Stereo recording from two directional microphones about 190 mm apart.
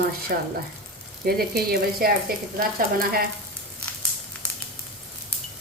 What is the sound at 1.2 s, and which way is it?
A woman's voice, 55° right (ahead or behind).